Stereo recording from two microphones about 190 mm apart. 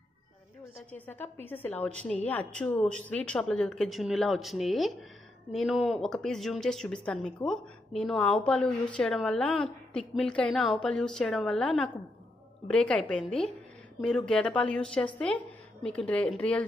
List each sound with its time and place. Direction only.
0.9 s a woman's voice: 10° left (ahead or behind)